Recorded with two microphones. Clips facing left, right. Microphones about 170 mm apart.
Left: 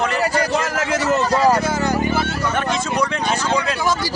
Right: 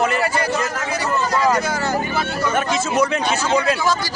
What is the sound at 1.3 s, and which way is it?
Speech, 35° left (ahead or behind).